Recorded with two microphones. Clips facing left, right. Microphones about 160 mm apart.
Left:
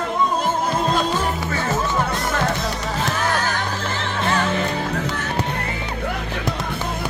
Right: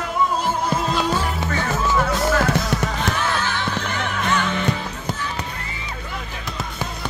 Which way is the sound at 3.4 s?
35° left (ahead or behind).